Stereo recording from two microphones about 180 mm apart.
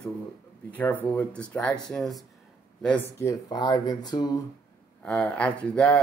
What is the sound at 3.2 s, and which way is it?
Speech, 20° left (ahead or behind).